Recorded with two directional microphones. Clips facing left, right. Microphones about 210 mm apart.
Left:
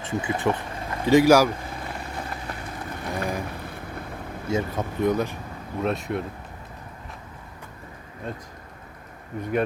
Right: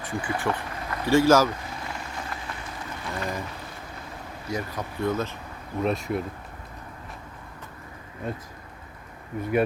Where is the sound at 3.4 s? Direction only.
55° left (ahead or behind).